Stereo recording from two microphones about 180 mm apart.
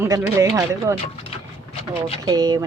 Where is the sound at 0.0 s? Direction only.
15° right (ahead or behind).